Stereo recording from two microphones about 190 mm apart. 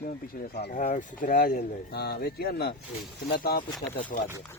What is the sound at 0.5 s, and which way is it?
Speech, 55° left (ahead or behind).